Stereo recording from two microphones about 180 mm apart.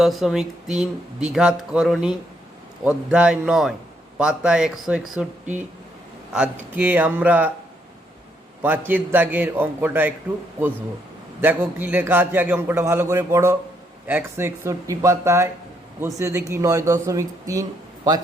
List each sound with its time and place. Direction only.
0.0 s speech: centre (ahead or behind)
6.3 s a man's voice: 5° right (ahead or behind)
8.9 s a man's voice: 10° right (ahead or behind)
11.3 s a man's voice: 10° right (ahead or behind)